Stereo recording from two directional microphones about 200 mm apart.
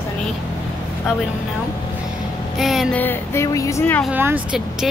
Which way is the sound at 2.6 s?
Centre (ahead or behind).